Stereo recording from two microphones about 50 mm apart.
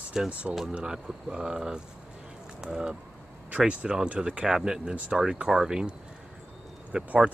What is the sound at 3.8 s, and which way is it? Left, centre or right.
Speech, centre.